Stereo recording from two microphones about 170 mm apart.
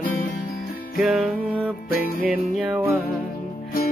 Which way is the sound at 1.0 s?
5° right (ahead or behind).